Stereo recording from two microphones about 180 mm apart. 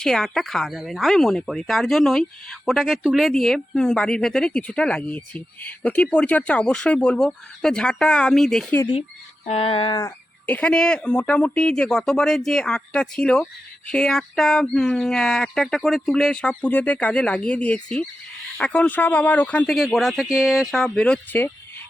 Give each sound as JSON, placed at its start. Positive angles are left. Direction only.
{"t": 0.0, "sound": "speech", "side_deg": 0}
{"t": 9.5, "sound": "a sound", "side_deg": 35}
{"t": 10.4, "sound": "speech", "side_deg": 5}